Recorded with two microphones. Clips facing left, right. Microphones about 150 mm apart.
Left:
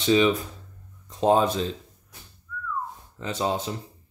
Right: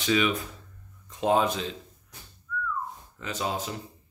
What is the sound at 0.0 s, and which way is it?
Speech, 30° left (ahead or behind).